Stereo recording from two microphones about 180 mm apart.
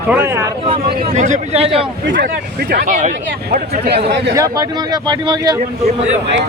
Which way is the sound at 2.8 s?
45° right (ahead or behind).